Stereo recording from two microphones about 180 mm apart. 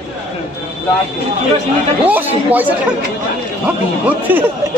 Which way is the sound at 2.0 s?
10° right (ahead or behind).